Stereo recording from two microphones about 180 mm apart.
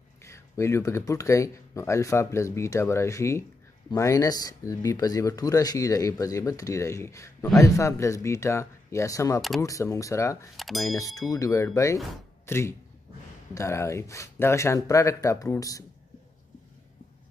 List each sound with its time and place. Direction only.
0.2 s speech: 15° left (ahead or behind)
10.5 s speech: centre (ahead or behind)
10.8 s speech: 20° left (ahead or behind)